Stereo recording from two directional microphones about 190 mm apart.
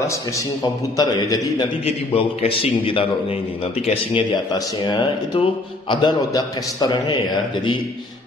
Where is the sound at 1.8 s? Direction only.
30° left (ahead or behind).